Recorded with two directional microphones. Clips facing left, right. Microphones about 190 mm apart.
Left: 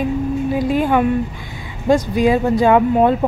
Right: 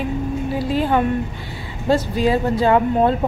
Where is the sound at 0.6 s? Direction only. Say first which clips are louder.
Left 2 dB; 15° left (ahead or behind).